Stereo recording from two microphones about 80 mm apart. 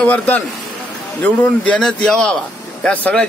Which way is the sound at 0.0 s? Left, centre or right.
Centre.